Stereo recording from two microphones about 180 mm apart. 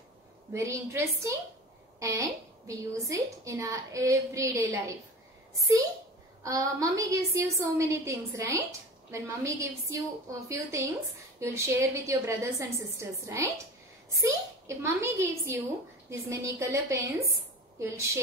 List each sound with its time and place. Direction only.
0.5 s a woman's voice: 15° right (ahead or behind)
6.4 s a woman's voice: 20° right (ahead or behind)